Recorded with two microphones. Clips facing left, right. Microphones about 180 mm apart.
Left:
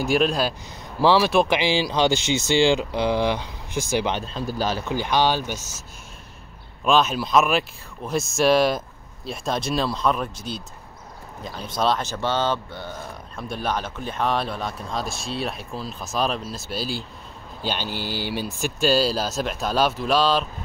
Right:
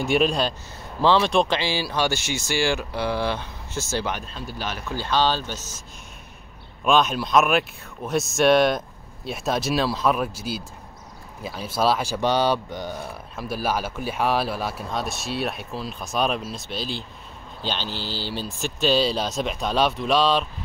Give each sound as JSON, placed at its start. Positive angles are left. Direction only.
{"t": 0.0, "sound": "speech", "side_deg": 0}
{"t": 1.6, "sound": "speech", "side_deg": 15}
{"t": 4.5, "sound": "speech", "side_deg": 35}
{"t": 4.8, "sound": "speech", "side_deg": 15}
{"t": 13.4, "sound": "speech", "side_deg": -5}